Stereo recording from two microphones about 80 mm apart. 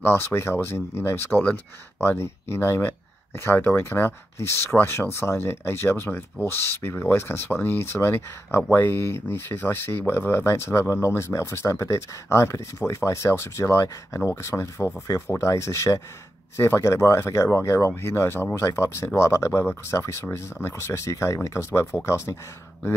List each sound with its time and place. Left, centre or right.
0.0 s speech: left